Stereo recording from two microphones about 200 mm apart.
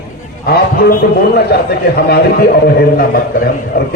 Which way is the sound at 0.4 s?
50° left (ahead or behind).